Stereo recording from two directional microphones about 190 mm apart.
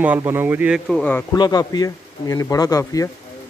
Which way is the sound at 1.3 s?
20° left (ahead or behind).